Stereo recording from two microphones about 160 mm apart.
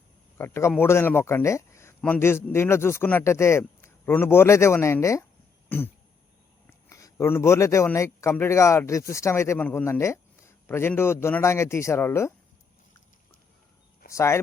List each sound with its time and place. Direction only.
0.3 s a man's voice: 15° left (ahead or behind)
6.9 s speech: 20° left (ahead or behind)
14.1 s speech: 15° left (ahead or behind)